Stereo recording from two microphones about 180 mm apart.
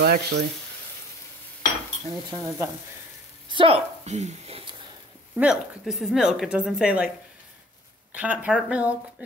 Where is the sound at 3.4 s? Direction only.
30° right (ahead or behind).